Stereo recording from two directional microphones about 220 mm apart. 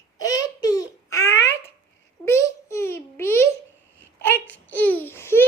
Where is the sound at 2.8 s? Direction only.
10° left (ahead or behind).